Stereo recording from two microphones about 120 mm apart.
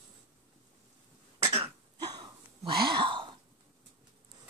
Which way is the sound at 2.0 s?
35° right (ahead or behind).